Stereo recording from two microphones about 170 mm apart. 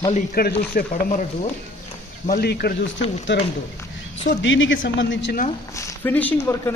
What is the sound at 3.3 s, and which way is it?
A man's voice, 90° left.